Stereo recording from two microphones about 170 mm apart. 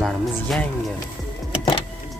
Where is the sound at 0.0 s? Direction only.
Centre (ahead or behind).